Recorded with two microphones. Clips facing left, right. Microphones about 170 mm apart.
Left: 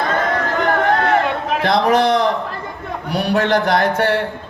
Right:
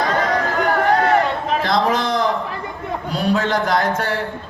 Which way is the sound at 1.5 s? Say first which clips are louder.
Left 4 dB; 65° left (ahead or behind).